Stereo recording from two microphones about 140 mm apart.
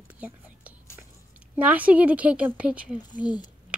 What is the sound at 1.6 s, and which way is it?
Speech, 10° right (ahead or behind).